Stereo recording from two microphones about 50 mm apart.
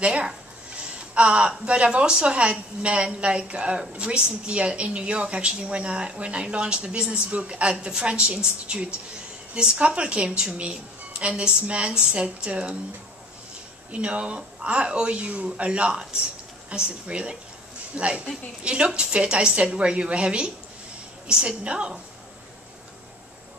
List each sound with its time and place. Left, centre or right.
0.0 s a woman's voice: right
13.9 s a woman's voice: right